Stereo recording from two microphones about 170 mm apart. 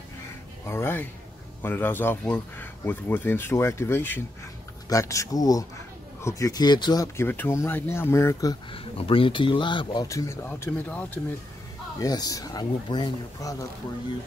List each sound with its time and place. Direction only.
0.7 s speech: 15° left (ahead or behind)
8.7 s speech: 30° left (ahead or behind); by 11.1 s 10° left (ahead or behind)
12.0 s speech: 20° left (ahead or behind)